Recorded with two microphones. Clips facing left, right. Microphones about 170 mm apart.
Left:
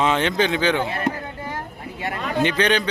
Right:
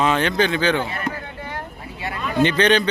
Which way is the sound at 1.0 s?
45° left (ahead or behind).